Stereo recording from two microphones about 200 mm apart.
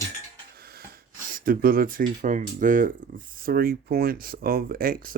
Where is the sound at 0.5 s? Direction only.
50° right (ahead or behind).